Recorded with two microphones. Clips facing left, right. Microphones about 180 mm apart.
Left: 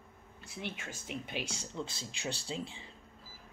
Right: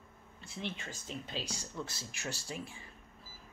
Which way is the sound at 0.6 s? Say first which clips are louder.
Even; 10° left (ahead or behind).